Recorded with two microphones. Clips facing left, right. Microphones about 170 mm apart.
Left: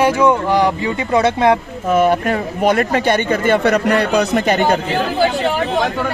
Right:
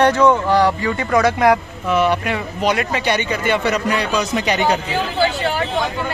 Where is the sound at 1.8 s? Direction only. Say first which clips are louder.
Left 4 dB; 50° left (ahead or behind).